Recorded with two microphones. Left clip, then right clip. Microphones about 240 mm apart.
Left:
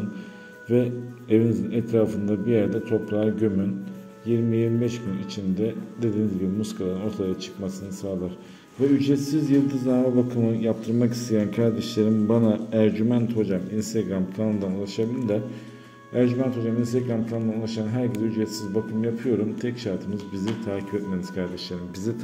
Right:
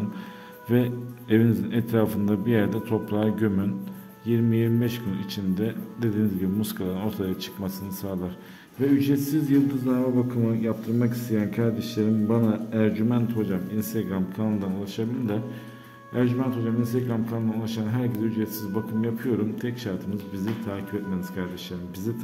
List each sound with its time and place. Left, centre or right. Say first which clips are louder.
0.7 s a man's voice: left 2 dB; right